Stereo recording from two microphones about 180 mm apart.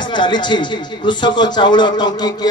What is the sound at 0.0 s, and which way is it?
A man's voice, 25° left (ahead or behind).